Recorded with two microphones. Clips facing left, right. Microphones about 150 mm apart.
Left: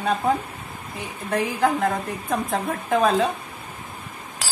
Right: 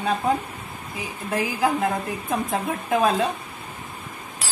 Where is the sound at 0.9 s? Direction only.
Centre (ahead or behind).